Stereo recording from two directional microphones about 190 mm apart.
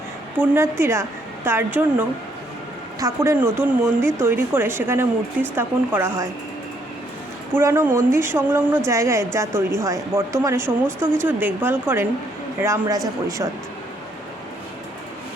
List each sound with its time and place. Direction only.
0.3 s speech: 15° right (ahead or behind)
7.5 s speech: 15° right (ahead or behind)